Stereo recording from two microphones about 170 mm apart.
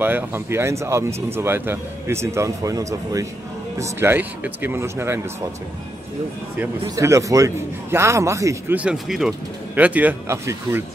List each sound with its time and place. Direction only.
0.0 s speech: 10° right (ahead or behind)
7.0 s speech: 20° right (ahead or behind)